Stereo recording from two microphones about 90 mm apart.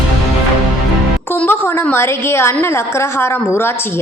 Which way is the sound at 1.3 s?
20° left (ahead or behind).